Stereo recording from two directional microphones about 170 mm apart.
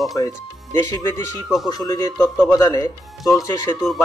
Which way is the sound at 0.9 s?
20° left (ahead or behind).